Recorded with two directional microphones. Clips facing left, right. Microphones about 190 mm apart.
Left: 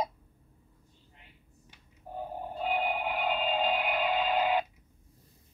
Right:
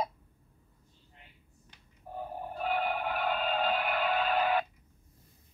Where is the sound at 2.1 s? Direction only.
15° left (ahead or behind).